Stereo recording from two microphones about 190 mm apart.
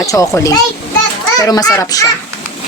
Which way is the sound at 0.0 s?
15° left (ahead or behind).